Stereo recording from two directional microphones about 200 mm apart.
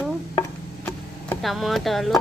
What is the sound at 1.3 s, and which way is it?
Speech, centre (ahead or behind).